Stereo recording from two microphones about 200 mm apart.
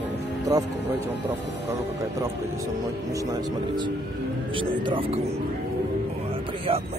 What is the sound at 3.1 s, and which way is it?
Speech, 15° right (ahead or behind).